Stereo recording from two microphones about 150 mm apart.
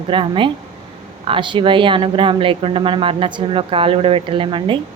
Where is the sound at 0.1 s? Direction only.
35° right (ahead or behind).